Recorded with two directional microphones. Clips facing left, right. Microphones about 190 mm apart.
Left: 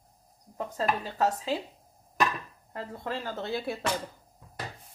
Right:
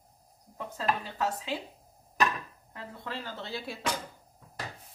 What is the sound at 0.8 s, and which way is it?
Speech, 40° left (ahead or behind).